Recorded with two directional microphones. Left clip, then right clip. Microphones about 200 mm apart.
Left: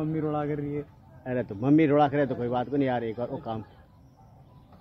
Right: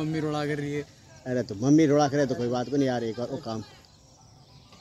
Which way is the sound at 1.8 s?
35° right (ahead or behind).